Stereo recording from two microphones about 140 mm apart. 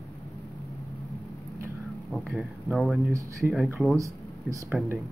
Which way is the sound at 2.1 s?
Centre (ahead or behind).